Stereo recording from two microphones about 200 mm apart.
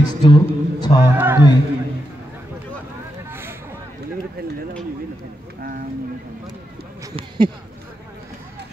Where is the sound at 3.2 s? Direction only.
10° right (ahead or behind).